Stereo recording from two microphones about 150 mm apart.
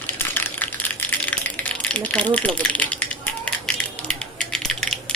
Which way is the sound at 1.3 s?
10° left (ahead or behind).